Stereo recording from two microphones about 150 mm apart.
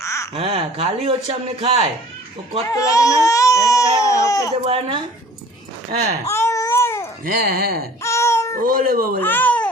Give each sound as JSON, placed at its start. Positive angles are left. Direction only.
{"t": 0.0, "sound": "a sound", "side_deg": 20}
{"t": 0.3, "sound": "speech", "side_deg": -40}
{"t": 2.6, "sound": "speech", "side_deg": 20}
{"t": 4.6, "sound": "speech", "side_deg": -35}
{"t": 6.2, "sound": "babbling", "side_deg": 20}
{"t": 7.4, "sound": "speech", "side_deg": -90}
{"t": 8.0, "sound": "baby cry", "side_deg": 20}
{"t": 8.5, "sound": "speech", "side_deg": -70}
{"t": 9.2, "sound": "a child's voice", "side_deg": 10}